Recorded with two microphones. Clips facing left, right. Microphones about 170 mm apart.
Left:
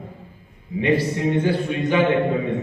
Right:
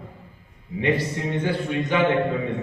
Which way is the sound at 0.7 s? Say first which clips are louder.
Left 3 dB; 30° left (ahead or behind).